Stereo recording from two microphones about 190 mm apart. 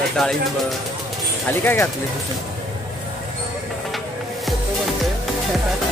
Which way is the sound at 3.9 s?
Centre (ahead or behind).